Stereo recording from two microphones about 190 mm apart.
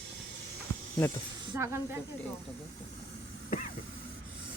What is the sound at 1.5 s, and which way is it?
Speech, 15° right (ahead or behind).